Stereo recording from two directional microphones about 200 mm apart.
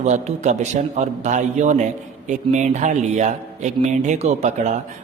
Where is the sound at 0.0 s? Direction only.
35° right (ahead or behind).